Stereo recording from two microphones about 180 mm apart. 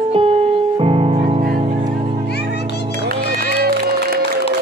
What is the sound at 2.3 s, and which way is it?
Music, 65° left (ahead or behind).